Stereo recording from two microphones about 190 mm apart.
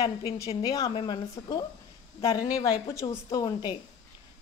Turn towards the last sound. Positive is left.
turn(degrees=20)  # may be behind; listen again after turning